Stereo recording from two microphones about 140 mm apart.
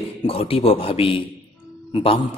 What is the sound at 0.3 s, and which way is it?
Speech, 45° left (ahead or behind).